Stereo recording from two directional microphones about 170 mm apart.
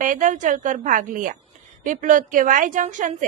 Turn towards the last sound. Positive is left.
turn(degrees=-50)  # may be behind; listen again after turning